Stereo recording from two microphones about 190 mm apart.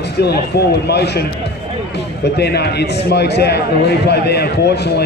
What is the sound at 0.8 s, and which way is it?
Speech, 60° left (ahead or behind).